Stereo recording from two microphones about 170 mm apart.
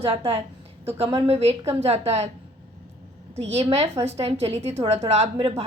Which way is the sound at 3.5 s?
40° right (ahead or behind).